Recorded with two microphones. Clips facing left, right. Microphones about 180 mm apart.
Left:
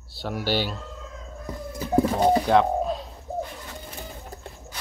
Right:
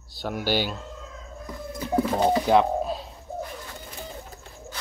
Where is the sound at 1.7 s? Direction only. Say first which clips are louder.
Left 2 dB; 40° left (ahead or behind).